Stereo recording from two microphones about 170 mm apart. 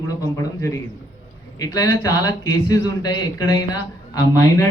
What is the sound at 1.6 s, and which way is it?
A man's voice, 20° left (ahead or behind).